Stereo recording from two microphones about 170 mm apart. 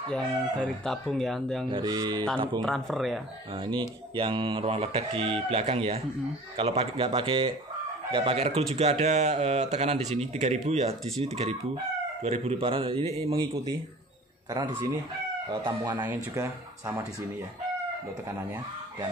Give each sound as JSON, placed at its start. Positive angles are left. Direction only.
{"t": 0.1, "sound": "speech", "side_deg": 5}
{"t": 1.7, "sound": "speech", "side_deg": -25}
{"t": 2.6, "sound": "speech", "side_deg": 0}
{"t": 3.5, "sound": "speech", "side_deg": -30}
{"t": 14.5, "sound": "speech", "side_deg": -25}
{"t": 16.0, "sound": "speech", "side_deg": -15}